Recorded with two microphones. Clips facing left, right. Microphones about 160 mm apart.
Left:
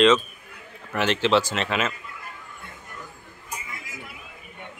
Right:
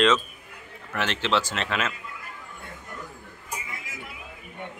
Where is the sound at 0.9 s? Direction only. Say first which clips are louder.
Left 5 dB; 10° left (ahead or behind).